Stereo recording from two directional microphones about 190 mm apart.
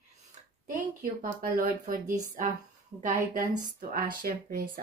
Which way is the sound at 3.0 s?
40° right (ahead or behind).